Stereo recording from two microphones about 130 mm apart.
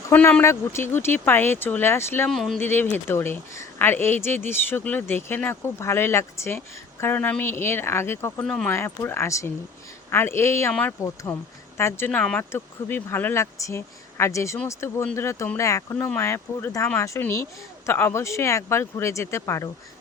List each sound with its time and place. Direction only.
0.1 s speech: 15° left (ahead or behind)
2.3 s speech: centre (ahead or behind)
2.6 s speech: 15° left (ahead or behind)
8.4 s speech: 10° left (ahead or behind)
8.7 s speech: 20° left (ahead or behind)